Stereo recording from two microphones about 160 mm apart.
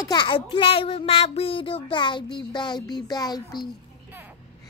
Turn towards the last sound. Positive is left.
turn(degrees=25)  # may be behind; listen again after turning